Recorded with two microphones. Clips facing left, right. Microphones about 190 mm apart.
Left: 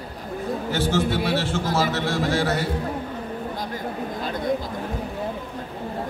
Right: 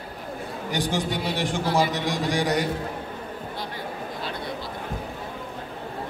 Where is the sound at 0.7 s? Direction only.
15° right (ahead or behind).